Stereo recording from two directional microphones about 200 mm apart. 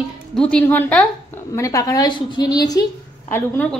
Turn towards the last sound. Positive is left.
turn(degrees=10)  # may be behind; listen again after turning